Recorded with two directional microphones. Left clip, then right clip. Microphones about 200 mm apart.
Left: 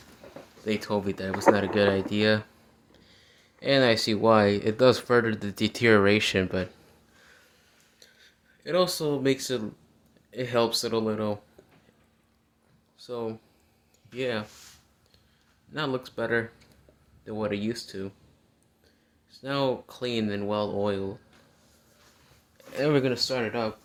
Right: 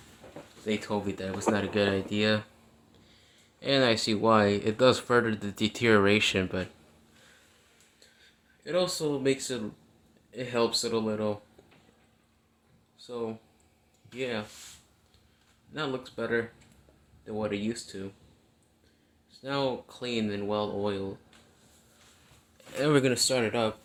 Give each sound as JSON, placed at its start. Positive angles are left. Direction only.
{"t": 0.6, "sound": "speech", "side_deg": 35}
{"t": 7.9, "sound": "a sound", "side_deg": 40}
{"t": 10.3, "sound": "speech", "side_deg": 40}
{"t": 13.0, "sound": "speech", "side_deg": 40}
{"t": 15.7, "sound": "speech", "side_deg": 45}
{"t": 19.3, "sound": "speech", "side_deg": 40}
{"t": 22.8, "sound": "speech", "side_deg": 0}
{"t": 23.1, "sound": "speech", "side_deg": -15}